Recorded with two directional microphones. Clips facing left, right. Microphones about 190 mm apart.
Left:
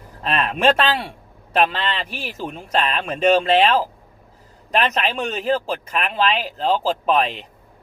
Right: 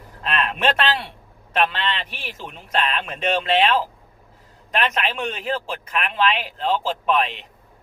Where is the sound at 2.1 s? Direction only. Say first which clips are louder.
Left 6 dB; 40° left (ahead or behind).